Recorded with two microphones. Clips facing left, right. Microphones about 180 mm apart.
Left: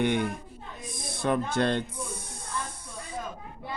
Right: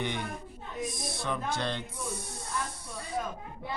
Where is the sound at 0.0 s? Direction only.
55° left (ahead or behind).